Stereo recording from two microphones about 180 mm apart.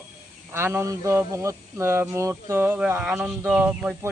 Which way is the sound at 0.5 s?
15° right (ahead or behind).